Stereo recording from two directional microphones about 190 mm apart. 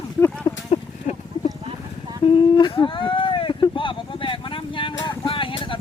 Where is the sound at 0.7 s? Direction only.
35° left (ahead or behind).